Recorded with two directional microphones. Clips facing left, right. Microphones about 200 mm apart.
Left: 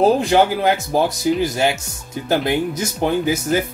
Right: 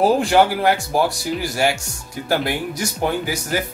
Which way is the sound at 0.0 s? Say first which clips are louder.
Left 1 dB; 20° left (ahead or behind).